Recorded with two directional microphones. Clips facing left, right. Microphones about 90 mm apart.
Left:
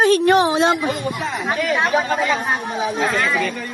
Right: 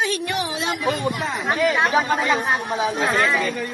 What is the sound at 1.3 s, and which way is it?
Speech, centre (ahead or behind).